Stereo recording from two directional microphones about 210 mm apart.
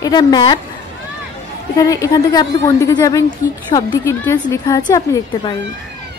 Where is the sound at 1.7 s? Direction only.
15° left (ahead or behind).